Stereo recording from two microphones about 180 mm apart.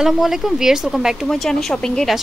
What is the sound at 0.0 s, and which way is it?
Speech, centre (ahead or behind).